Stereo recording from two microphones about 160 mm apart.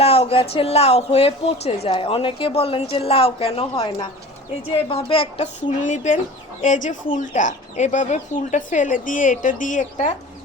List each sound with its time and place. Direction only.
0.0 s a woman's voice: 40° left (ahead or behind)
5.8 s speech: 50° left (ahead or behind)